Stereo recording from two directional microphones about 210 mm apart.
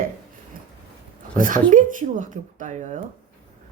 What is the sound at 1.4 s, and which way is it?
Speech, 40° right (ahead or behind).